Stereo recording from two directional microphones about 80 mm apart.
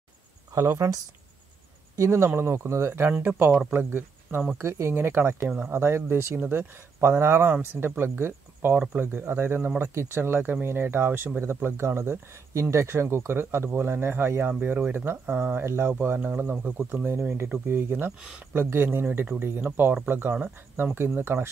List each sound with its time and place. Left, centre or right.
0.6 s speech: right